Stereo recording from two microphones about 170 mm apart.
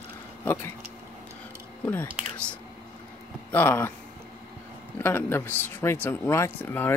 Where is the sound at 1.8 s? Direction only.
10° left (ahead or behind).